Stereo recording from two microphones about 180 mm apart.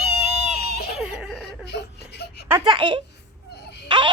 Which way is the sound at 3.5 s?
65° left (ahead or behind).